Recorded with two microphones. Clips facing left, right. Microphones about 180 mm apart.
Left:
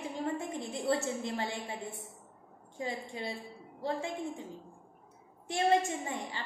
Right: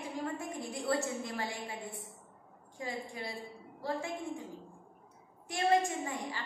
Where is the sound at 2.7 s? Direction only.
25° left (ahead or behind).